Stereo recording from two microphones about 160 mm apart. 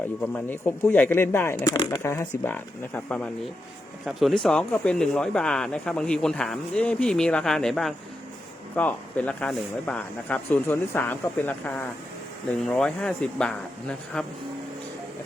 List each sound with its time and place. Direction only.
0.2 s speech: 10° left (ahead or behind)
4.0 s speech: centre (ahead or behind)